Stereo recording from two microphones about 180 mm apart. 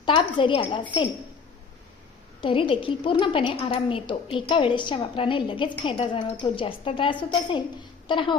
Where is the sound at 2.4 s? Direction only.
30° left (ahead or behind).